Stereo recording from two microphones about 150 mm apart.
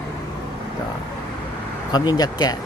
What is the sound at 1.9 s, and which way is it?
Speech, 25° left (ahead or behind).